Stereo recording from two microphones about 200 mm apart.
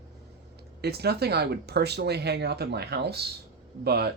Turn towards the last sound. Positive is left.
turn(degrees=-55)  # may be behind; listen again after turning